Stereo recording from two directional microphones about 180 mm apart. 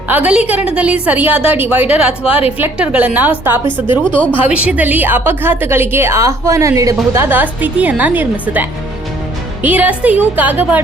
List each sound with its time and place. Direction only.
0.1 s a woman's voice: 5° right (ahead or behind)
2.2 s a woman's voice: 30° left (ahead or behind)
2.6 s a woman's voice: 10° right (ahead or behind)
3.7 s speech: 25° left (ahead or behind)
4.4 s a woman's voice: 5° right (ahead or behind)
9.6 s a woman's voice: 10° right (ahead or behind)